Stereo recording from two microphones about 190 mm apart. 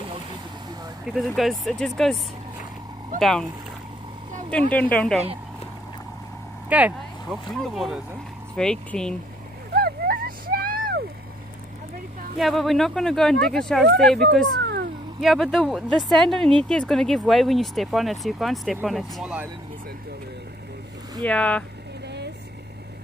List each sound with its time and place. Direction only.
1.1 s speech: centre (ahead or behind)
3.2 s speech: centre (ahead or behind)
4.5 s speech: 5° left (ahead or behind)
6.7 s speech: 5° right (ahead or behind)
9.8 s a sound: 55° right (ahead or behind)
12.4 s speech: centre (ahead or behind)
14.6 s cat: 60° right (ahead or behind)
15.1 s speech: centre (ahead or behind)
21.2 s speech: 5° left (ahead or behind)
22.0 s vehicle: 60° right (ahead or behind)